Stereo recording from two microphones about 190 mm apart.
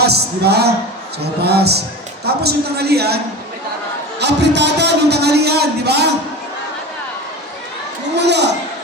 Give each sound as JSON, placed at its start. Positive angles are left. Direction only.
{"t": 0.0, "sound": "a man's voice", "side_deg": -60}
{"t": 4.2, "sound": "a man's voice", "side_deg": -65}
{"t": 8.1, "sound": "a sound", "side_deg": -65}